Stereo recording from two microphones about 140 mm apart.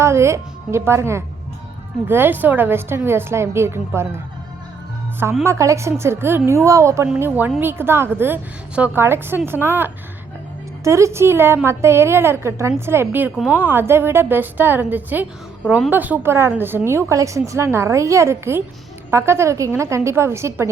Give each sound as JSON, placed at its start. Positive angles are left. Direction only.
{"t": 0.0, "sound": "a woman's voice", "side_deg": -20}
{"t": 5.4, "sound": "a woman's voice", "side_deg": -20}